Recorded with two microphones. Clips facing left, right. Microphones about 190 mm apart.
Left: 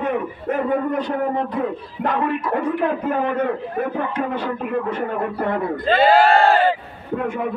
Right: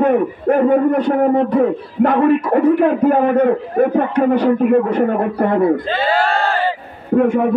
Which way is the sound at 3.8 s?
45° right (ahead or behind).